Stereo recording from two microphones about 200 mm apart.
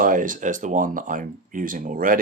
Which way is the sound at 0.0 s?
40° right (ahead or behind).